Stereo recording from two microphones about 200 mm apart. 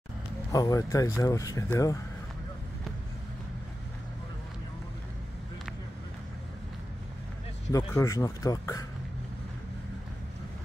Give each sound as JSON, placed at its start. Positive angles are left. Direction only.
{"t": 0.5, "sound": "speech", "side_deg": 15}
{"t": 7.7, "sound": "speech", "side_deg": 15}